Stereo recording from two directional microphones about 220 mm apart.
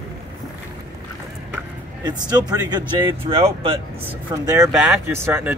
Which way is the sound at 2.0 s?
20° right (ahead or behind).